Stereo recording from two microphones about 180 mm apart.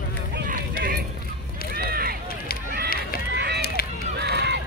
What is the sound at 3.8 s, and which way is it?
Run, 55° left (ahead or behind).